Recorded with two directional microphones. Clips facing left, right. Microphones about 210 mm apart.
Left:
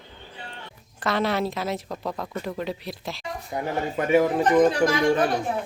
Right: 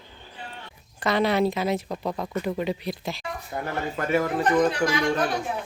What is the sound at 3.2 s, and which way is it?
Speech, 15° left (ahead or behind).